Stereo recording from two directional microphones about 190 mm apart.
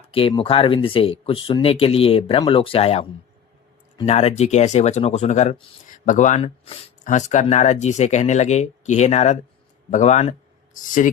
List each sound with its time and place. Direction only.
0.1 s speech: 30° left (ahead or behind)